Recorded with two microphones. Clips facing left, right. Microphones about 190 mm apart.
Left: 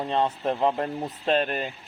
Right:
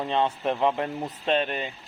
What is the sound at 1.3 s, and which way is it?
Speech, 45° left (ahead or behind).